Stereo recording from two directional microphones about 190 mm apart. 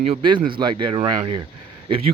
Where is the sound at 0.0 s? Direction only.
30° right (ahead or behind).